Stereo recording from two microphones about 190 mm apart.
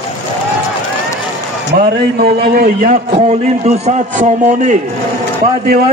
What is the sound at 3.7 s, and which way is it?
A man's voice, 35° right (ahead or behind).